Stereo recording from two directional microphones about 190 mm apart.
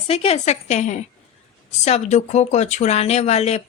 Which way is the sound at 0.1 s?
30° left (ahead or behind).